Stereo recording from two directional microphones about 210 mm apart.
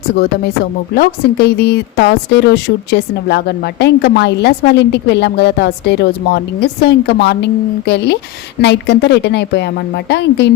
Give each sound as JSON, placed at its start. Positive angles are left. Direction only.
{"t": 0.1, "sound": "a woman's voice", "side_deg": 45}